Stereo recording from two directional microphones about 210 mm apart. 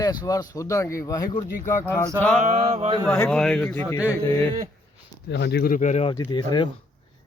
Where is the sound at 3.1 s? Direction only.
5° left (ahead or behind).